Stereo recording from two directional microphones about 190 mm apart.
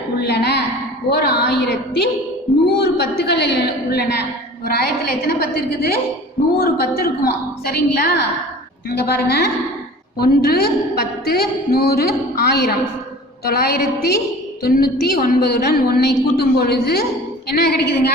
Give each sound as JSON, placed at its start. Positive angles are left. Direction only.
{"t": 0.2, "sound": "a woman's voice", "side_deg": 60}